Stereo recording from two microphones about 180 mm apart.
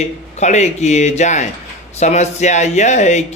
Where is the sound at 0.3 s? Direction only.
40° left (ahead or behind).